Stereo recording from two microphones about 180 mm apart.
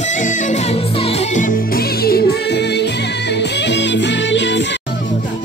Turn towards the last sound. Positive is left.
turn(degrees=80)